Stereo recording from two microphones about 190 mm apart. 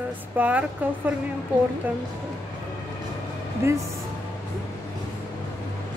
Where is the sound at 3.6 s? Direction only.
15° right (ahead or behind).